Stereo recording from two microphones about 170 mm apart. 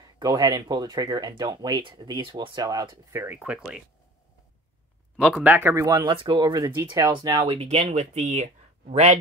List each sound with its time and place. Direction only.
0.2 s speech: 25° right (ahead or behind); by 3.8 s 5° right (ahead or behind)
5.1 s speech: centre (ahead or behind)
5.4 s speech: 10° right (ahead or behind); by 9.2 s 45° right (ahead or behind)